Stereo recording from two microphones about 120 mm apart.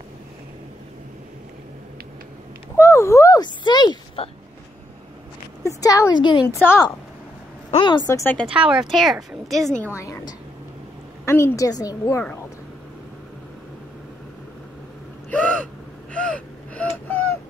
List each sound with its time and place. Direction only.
2.8 s speech: 25° left (ahead or behind)
5.6 s a woman's voice: 30° left (ahead or behind)
6.4 s a woman's voice: 20° left (ahead or behind)
7.7 s a woman's voice: 40° left (ahead or behind)
8.1 s a woman's voice: 20° left (ahead or behind)
8.5 s a woman's voice: 10° right (ahead or behind)
9.9 s a woman's voice: 25° left (ahead or behind)
15.3 s gasp: 10° left (ahead or behind)